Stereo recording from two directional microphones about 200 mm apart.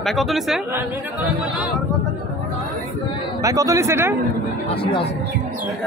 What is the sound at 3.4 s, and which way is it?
Speech, 15° right (ahead or behind).